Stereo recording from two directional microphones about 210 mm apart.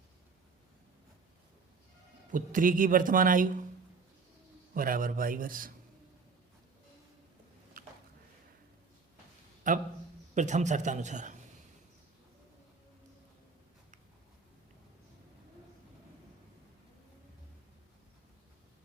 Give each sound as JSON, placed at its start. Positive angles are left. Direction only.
{"t": 2.3, "sound": "a man's voice", "side_deg": -40}
{"t": 4.7, "sound": "a man's voice", "side_deg": -40}
{"t": 7.8, "sound": "a sound", "side_deg": -45}
{"t": 9.7, "sound": "a man's voice", "side_deg": -35}